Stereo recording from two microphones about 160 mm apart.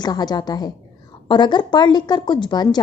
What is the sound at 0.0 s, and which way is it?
A woman's voice, 25° left (ahead or behind).